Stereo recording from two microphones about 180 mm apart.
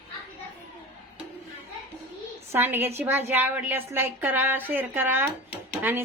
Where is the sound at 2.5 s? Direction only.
10° right (ahead or behind).